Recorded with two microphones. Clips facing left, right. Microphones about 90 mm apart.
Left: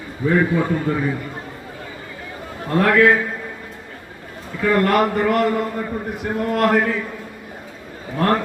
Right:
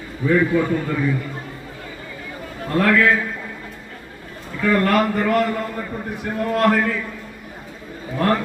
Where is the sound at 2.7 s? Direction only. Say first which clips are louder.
Left 2 dB; 25° left (ahead or behind).